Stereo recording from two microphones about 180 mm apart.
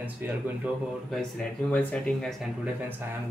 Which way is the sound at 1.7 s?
10° left (ahead or behind).